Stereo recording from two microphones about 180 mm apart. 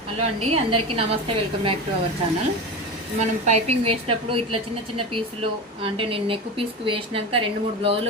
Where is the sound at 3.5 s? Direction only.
40° right (ahead or behind).